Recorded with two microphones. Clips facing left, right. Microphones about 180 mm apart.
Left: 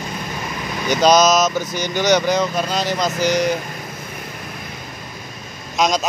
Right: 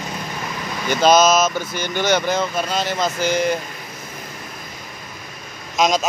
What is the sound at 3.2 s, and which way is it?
Speech, 40° left (ahead or behind).